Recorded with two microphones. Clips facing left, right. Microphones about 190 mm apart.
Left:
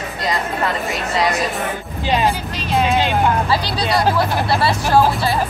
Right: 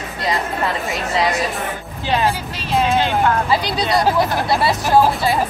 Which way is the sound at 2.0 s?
15° left (ahead or behind).